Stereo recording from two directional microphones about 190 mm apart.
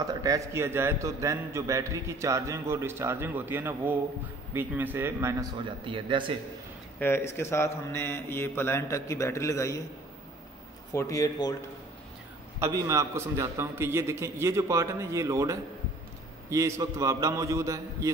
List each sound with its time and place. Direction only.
0.0 s a man's voice: 20° right (ahead or behind)
5.9 s speech: 25° right (ahead or behind)
7.0 s a man's voice: 10° left (ahead or behind)
10.9 s a man's voice: 15° left (ahead or behind)
12.5 s a man's voice: 15° right (ahead or behind)